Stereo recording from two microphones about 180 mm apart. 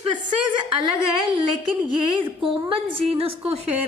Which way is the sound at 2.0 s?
25° right (ahead or behind).